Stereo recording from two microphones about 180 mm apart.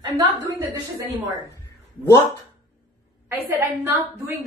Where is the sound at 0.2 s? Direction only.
15° right (ahead or behind).